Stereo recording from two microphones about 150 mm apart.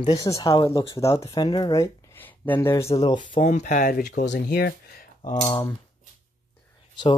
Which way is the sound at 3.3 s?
55° left (ahead or behind).